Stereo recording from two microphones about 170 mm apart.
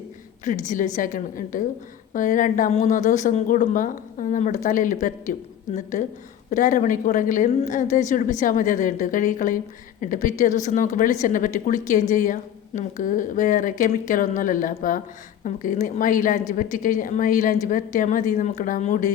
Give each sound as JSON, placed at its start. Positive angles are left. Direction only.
{"t": 0.4, "sound": "speech", "side_deg": 45}